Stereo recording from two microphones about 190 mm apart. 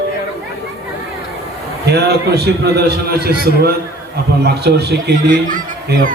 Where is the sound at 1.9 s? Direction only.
60° right (ahead or behind).